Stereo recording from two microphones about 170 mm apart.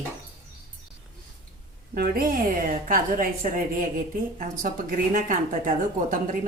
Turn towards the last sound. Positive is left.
turn(degrees=-50)  # may be behind; listen again after turning